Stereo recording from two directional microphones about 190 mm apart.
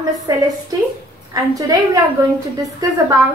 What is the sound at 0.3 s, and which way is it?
A woman's voice, 20° right (ahead or behind).